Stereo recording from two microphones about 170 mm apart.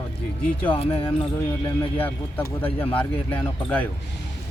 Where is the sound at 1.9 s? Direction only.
10° left (ahead or behind).